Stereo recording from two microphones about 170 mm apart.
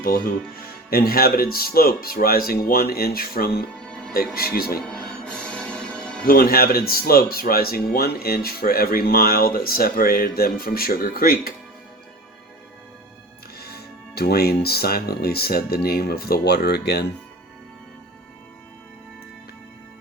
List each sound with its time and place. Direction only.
0.0 s speech: 60° left (ahead or behind)
3.8 s music: 5° left (ahead or behind)
4.4 s speech: 60° left (ahead or behind)
5.2 s music: 5° left (ahead or behind)
6.2 s speech: 60° left (ahead or behind)
13.6 s speech: 70° left (ahead or behind)